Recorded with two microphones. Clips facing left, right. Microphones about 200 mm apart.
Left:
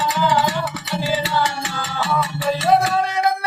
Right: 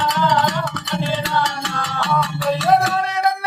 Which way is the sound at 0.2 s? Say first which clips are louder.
Left 1 dB; 5° left (ahead or behind).